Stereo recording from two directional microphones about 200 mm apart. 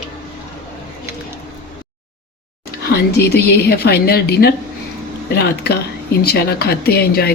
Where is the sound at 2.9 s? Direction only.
55° left (ahead or behind).